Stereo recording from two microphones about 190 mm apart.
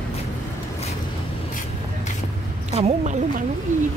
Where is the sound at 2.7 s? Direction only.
35° right (ahead or behind).